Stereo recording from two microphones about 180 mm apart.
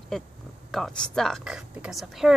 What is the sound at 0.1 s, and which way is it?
Speech, 5° left (ahead or behind).